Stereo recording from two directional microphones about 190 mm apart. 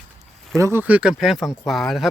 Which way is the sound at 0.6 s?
10° right (ahead or behind).